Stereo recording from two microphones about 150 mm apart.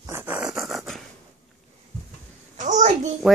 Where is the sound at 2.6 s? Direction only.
55° right (ahead or behind).